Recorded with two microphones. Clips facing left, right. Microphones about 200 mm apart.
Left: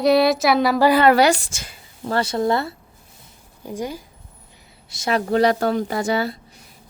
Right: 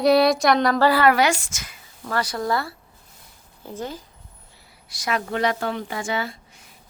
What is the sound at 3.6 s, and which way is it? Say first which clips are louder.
Speech: left 4 dB; 15° left (ahead or behind).